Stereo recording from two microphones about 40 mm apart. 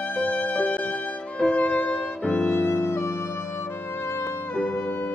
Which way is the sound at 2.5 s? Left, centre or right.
Left.